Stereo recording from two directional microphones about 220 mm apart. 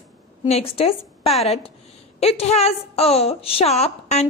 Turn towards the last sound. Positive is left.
turn(degrees=30)  # may be behind; listen again after turning